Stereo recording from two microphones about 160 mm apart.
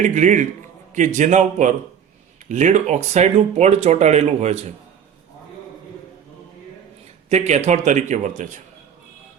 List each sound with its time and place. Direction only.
0.0 s speech: 50° right (ahead or behind)
7.3 s speech: 45° right (ahead or behind)